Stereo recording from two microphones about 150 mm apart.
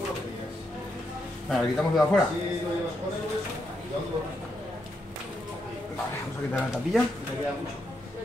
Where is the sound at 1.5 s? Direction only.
Centre (ahead or behind).